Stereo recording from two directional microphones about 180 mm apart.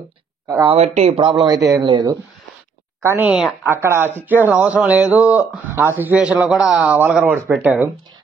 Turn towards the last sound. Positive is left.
turn(degrees=-10)  # may be behind; listen again after turning